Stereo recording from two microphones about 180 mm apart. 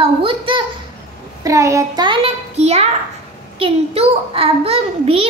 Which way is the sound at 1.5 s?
15° right (ahead or behind).